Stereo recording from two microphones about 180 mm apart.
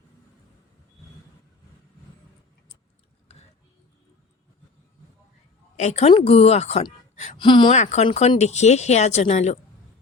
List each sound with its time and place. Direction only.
3.3 s a sound: 35° left (ahead or behind)
5.7 s speech: 40° left (ahead or behind)
7.3 s speech: 25° left (ahead or behind)
7.8 s speech: 40° left (ahead or behind)